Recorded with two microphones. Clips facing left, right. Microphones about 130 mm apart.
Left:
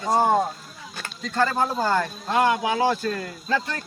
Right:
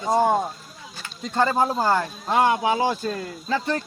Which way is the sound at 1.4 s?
15° right (ahead or behind).